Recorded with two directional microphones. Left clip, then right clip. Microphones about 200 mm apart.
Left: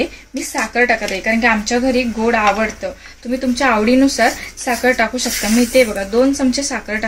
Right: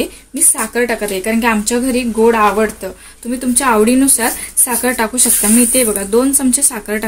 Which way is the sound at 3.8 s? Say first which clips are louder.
Left 1 dB; 60° right (ahead or behind).